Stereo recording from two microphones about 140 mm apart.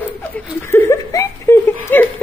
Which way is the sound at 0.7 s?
20° left (ahead or behind).